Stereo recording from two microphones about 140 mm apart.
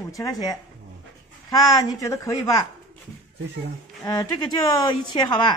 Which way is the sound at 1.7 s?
25° left (ahead or behind).